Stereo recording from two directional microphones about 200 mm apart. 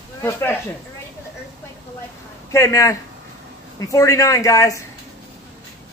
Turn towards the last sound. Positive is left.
turn(degrees=15)  # may be behind; listen again after turning